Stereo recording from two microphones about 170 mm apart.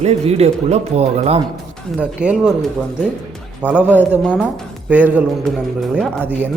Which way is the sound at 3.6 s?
10° left (ahead or behind).